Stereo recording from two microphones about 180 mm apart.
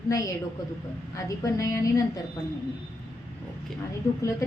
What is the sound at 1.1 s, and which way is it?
Speech, 15° left (ahead or behind).